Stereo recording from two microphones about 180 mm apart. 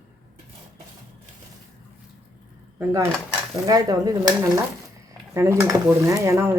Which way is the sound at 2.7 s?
15° right (ahead or behind).